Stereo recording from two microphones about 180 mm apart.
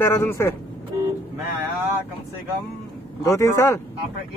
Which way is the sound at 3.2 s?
15° left (ahead or behind).